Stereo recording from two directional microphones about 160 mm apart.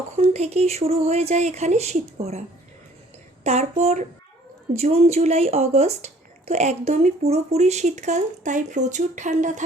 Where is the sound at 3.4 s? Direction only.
45° right (ahead or behind).